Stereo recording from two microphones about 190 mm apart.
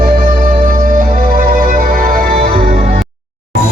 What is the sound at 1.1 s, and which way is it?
Music, 45° right (ahead or behind).